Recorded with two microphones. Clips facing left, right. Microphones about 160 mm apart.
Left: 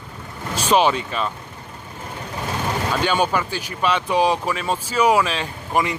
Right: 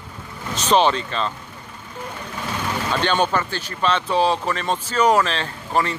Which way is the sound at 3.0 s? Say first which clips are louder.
Right 1 dB; 10° left (ahead or behind).